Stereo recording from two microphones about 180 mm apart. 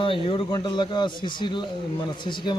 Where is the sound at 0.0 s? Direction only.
30° left (ahead or behind).